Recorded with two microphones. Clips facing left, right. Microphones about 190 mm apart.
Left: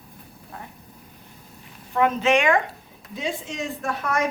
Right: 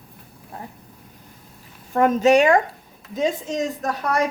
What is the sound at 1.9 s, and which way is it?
A woman's voice, 45° right (ahead or behind).